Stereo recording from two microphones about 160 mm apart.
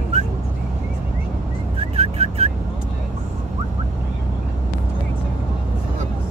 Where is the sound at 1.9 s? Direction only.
40° right (ahead or behind).